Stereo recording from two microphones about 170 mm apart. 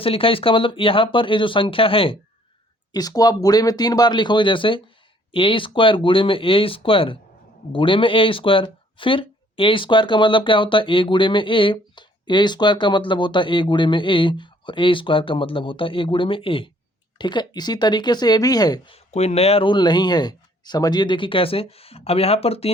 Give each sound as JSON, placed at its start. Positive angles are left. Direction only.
{"t": 0.0, "sound": "speech", "side_deg": 30}
{"t": 18.9, "sound": "speech", "side_deg": 40}